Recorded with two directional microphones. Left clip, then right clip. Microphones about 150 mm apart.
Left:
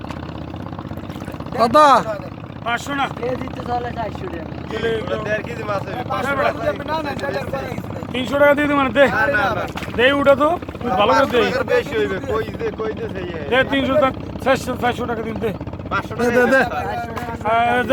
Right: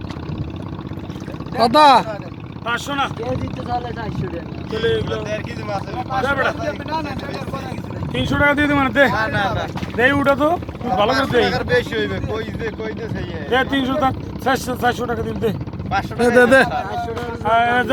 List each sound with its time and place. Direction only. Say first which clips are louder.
1.5 s speech: right 1 dB; centre (ahead or behind)
2.6 s speech: even; 10° right (ahead or behind)
3.2 s speech: left 1 dB; 25° left (ahead or behind)
5.0 s speech: left 2 dB; 25° left (ahead or behind)
6.2 s speech: even; 10° right (ahead or behind)
6.6 s speech: left 2 dB; 25° left (ahead or behind)
9.1 s speech: left 2 dB; 10° right (ahead or behind)
10.0 s speech: left 2 dB; 20° left (ahead or behind)
11.5 s speech: left 1 dB; 5° left (ahead or behind)
16.1 s speech: right 3 dB; 10° right (ahead or behind)
17.4 s speech: right 1 dB; 10° left (ahead or behind)